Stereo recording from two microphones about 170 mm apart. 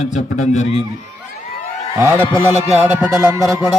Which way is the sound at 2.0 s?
15° right (ahead or behind).